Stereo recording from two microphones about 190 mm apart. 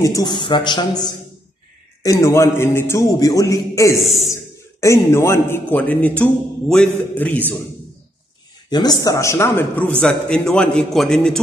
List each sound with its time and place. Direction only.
0.0 s a man's voice: 20° left (ahead or behind)
8.6 s a man's voice: 20° left (ahead or behind); by 11.4 s 5° left (ahead or behind)